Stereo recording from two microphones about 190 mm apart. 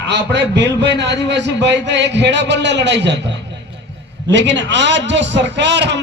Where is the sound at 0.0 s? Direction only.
65° right (ahead or behind).